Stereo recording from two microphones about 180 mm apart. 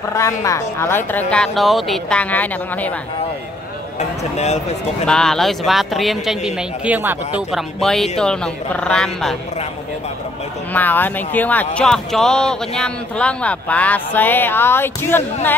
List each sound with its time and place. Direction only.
0.1 s speech: 15° left (ahead or behind)
4.0 s speech: 40° left (ahead or behind)
5.0 s speech: 5° left (ahead or behind)
10.7 s speech: 10° left (ahead or behind)